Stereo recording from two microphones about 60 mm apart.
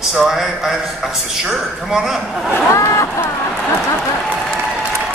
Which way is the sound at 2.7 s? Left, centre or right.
Left.